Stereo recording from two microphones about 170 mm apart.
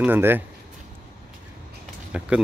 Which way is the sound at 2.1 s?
5° right (ahead or behind).